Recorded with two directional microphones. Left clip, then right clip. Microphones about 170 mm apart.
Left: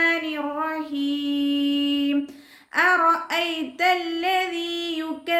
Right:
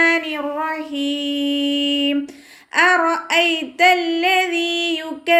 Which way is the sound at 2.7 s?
10° right (ahead or behind).